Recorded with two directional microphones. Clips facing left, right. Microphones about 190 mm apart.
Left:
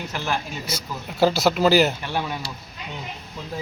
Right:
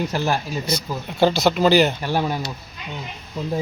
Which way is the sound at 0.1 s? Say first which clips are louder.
Right 5 dB; 40° right (ahead or behind).